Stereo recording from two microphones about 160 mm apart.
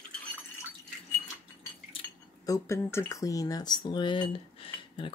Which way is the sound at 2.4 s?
20° left (ahead or behind).